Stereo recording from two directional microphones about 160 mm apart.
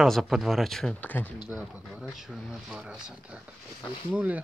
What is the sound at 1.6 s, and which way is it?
Speech, 5° right (ahead or behind).